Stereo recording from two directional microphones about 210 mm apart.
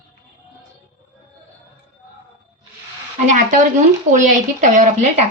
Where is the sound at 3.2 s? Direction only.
35° right (ahead or behind).